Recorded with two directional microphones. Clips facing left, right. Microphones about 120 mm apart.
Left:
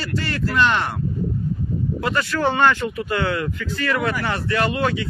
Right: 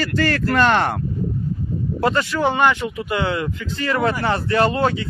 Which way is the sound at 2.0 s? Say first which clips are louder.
Right 5 dB; 30° right (ahead or behind).